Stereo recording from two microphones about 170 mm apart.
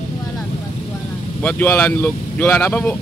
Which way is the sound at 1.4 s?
10° left (ahead or behind).